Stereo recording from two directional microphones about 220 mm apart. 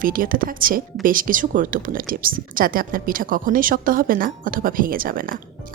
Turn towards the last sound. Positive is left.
turn(degrees=-40)  # may be behind; listen again after turning